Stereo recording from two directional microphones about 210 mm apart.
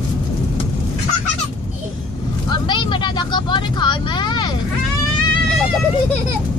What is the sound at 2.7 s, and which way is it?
Vehicle, 20° left (ahead or behind).